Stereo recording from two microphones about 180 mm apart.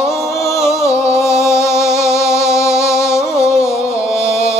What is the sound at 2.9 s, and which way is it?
Music, 15° left (ahead or behind).